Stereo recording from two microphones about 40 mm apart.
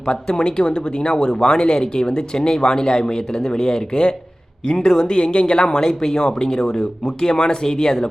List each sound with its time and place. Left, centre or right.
0.0 s speech: centre